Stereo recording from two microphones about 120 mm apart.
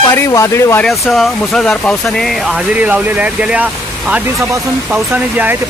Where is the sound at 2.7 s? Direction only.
15° right (ahead or behind).